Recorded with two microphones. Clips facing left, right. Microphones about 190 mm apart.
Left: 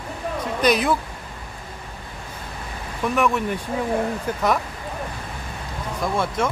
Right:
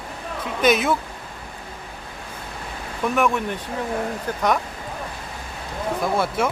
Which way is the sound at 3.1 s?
Centre (ahead or behind).